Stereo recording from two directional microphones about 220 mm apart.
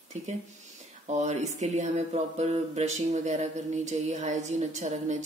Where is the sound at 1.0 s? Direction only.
30° right (ahead or behind).